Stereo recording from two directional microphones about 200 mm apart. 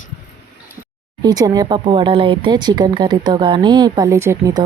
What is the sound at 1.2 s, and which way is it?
Speech, 20° right (ahead or behind).